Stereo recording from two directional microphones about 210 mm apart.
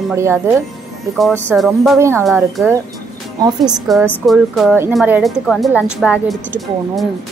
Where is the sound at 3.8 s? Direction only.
5° left (ahead or behind).